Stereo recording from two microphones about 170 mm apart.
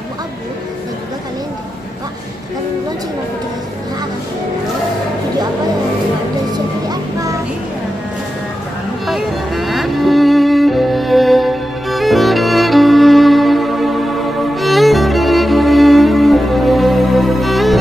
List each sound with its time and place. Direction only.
6.9 s music: 20° right (ahead or behind)
9.0 s music: centre (ahead or behind)